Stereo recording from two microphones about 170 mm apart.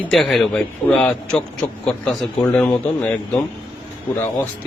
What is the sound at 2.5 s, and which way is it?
Speech, 10° left (ahead or behind).